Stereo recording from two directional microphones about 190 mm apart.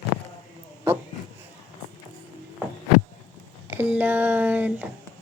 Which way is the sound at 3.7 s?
10° right (ahead or behind).